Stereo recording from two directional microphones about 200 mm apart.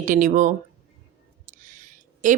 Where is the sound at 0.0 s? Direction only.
40° right (ahead or behind).